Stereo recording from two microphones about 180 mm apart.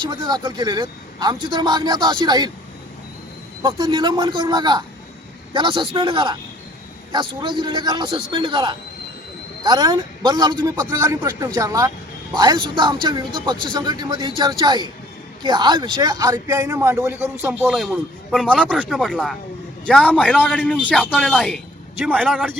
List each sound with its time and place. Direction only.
0.0 s a man's voice: 20° right (ahead or behind)
3.6 s a man's voice: 25° right (ahead or behind); by 21.6 s 5° left (ahead or behind)
22.0 s a man's voice: 10° right (ahead or behind)